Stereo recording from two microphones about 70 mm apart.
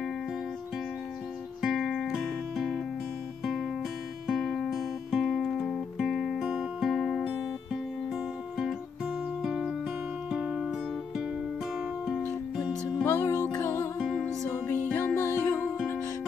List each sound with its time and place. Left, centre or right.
1.6 s music: centre
13.0 s music: left
14.9 s music: left